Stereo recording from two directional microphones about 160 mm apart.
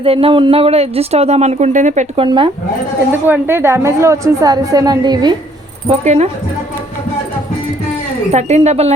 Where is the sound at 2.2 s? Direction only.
30° right (ahead or behind).